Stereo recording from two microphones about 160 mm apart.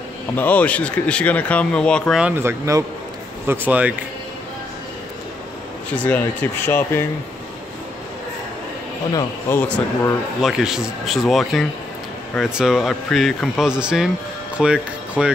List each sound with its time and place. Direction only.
0.4 s speech: 10° left (ahead or behind)
2.2 s speech: 15° right (ahead or behind)
5.9 s speech: 10° left (ahead or behind)
9.1 s speech: 15° left (ahead or behind)
10.4 s speech: 5° right (ahead or behind)